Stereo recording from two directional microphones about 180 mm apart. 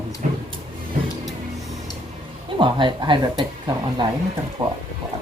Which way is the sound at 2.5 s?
25° right (ahead or behind).